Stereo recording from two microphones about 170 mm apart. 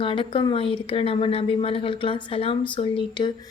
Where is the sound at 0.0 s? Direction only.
30° left (ahead or behind).